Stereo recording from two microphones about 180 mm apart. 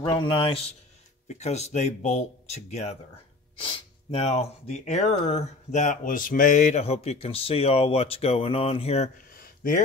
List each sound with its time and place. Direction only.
0.0 s a man's voice: 30° left (ahead or behind)
1.2 s speech: 40° left (ahead or behind)
9.3 s a sound: 50° left (ahead or behind)